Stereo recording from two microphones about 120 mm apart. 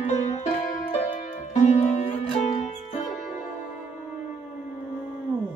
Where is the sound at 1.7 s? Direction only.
65° left (ahead or behind).